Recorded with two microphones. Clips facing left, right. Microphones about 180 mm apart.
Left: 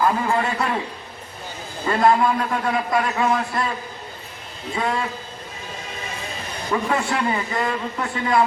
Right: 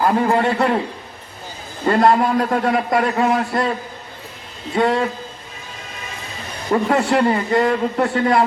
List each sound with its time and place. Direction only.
0.0 s a man's voice: 40° right (ahead or behind)
1.8 s a man's voice: 45° right (ahead or behind)
6.7 s a man's voice: 40° right (ahead or behind)